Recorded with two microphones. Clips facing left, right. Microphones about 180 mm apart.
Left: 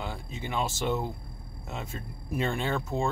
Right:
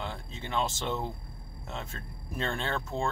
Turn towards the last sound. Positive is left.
turn(degrees=10)  # may be behind; listen again after turning